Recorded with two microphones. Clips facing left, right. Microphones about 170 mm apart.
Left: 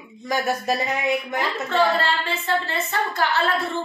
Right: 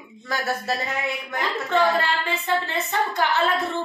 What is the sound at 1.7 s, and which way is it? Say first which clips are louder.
Speech: even; 15° right (ahead or behind).